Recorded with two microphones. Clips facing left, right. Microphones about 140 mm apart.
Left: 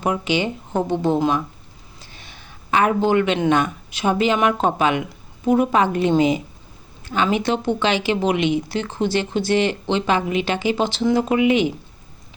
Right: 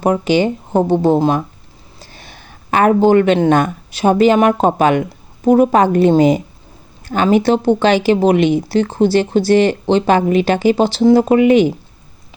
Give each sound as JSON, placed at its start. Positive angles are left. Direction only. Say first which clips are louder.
{"t": 0.0, "sound": "a woman's voice", "louder": "right 7 dB", "side_deg": -40}